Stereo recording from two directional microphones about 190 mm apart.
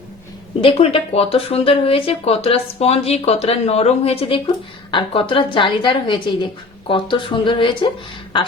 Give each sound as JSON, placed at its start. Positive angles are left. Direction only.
{"t": 0.6, "sound": "a woman's voice", "side_deg": 30}